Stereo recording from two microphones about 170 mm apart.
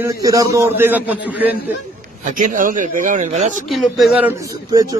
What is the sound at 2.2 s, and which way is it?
Speech, 50° right (ahead or behind).